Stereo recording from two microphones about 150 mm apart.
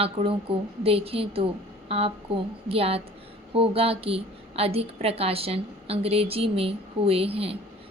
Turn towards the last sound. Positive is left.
turn(degrees=-40)  # may be behind; listen again after turning